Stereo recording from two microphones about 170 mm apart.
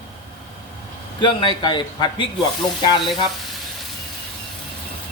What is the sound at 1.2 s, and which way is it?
A man's voice, 30° left (ahead or behind).